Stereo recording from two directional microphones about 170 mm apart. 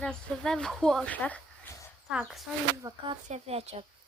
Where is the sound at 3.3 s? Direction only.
35° right (ahead or behind).